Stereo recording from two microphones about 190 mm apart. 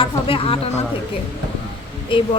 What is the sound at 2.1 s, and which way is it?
Speech, 25° left (ahead or behind).